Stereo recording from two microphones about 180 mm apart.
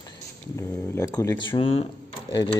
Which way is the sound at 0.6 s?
15° left (ahead or behind).